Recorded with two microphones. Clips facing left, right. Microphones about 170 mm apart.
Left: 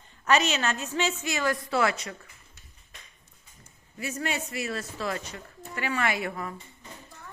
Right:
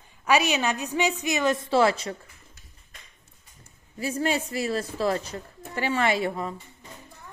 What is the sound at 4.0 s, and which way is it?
A woman's voice, 30° right (ahead or behind).